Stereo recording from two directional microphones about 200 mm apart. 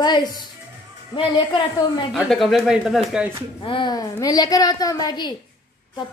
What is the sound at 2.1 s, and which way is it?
Speech, centre (ahead or behind).